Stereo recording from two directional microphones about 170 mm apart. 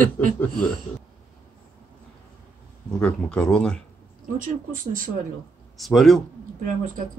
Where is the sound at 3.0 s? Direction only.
5° left (ahead or behind).